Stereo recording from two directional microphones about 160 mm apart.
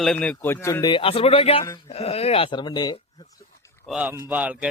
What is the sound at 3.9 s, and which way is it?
Speech, 10° right (ahead or behind).